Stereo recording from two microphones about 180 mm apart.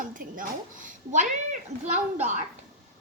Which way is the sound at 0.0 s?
50° right (ahead or behind).